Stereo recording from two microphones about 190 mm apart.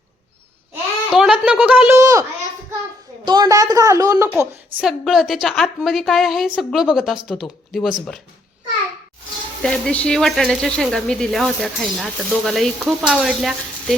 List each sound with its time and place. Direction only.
1.1 s speech: 5° right (ahead or behind)
3.2 s a woman's voice: 20° right (ahead or behind)
4.8 s speech: centre (ahead or behind)
9.6 s speech: 5° left (ahead or behind)